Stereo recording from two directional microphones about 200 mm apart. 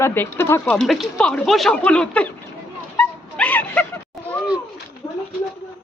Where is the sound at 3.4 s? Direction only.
5° left (ahead or behind).